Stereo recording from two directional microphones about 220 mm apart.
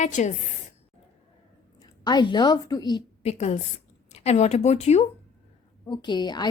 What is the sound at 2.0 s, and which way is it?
A woman's voice, 20° left (ahead or behind).